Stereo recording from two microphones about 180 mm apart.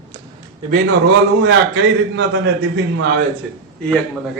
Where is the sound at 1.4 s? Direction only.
90° right.